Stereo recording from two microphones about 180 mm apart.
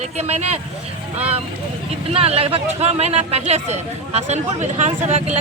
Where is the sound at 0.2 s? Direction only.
35° right (ahead or behind).